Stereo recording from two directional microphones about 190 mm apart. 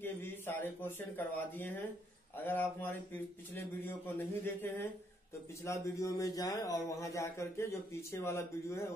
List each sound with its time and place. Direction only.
0.0 s a man's voice: 10° left (ahead or behind)